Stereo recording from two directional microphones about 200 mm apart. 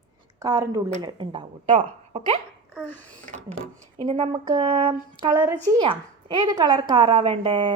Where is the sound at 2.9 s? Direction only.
10° left (ahead or behind).